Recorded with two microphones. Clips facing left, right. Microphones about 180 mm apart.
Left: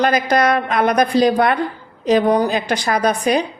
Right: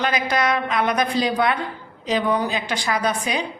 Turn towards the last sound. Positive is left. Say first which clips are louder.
# left 6 dB
turn(degrees=45)  # may be behind; listen again after turning